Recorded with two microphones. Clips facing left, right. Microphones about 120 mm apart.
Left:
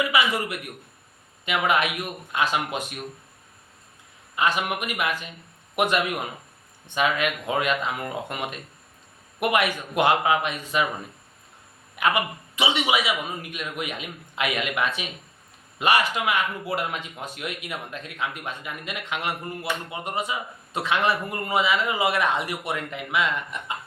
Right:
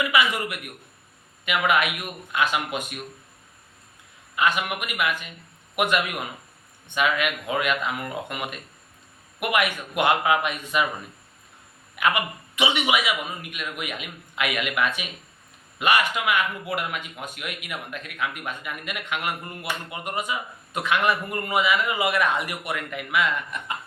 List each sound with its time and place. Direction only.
0.1 s a man's voice: 30° left (ahead or behind)
4.4 s a man's voice: 35° left (ahead or behind)
11.9 s a man's voice: 30° left (ahead or behind)